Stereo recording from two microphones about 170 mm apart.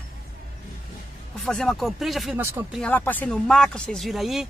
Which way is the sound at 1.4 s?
Centre (ahead or behind).